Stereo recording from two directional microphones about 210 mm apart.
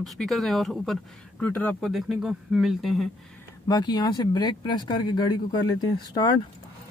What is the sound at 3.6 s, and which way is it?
Speech, 20° left (ahead or behind).